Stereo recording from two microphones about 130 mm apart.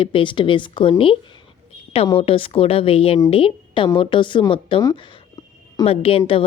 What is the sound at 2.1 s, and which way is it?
A woman's voice, 45° left (ahead or behind).